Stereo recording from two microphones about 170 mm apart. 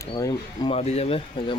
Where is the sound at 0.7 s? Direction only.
40° left (ahead or behind).